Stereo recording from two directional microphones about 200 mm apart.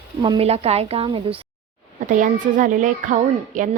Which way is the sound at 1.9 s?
40° right (ahead or behind).